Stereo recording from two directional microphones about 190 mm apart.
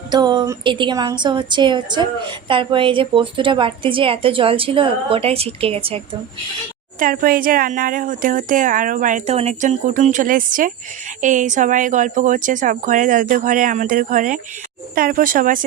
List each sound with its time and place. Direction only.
0.1 s a woman's voice: 25° right (ahead or behind)
7.0 s a woman's voice: 50° right (ahead or behind)